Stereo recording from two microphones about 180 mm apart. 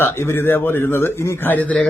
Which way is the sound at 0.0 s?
15° left (ahead or behind).